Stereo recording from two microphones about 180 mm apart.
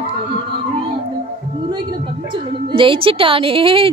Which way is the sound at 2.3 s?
30° right (ahead or behind).